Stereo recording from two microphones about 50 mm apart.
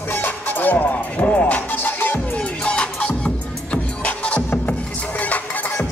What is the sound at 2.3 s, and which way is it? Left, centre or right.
Music, left.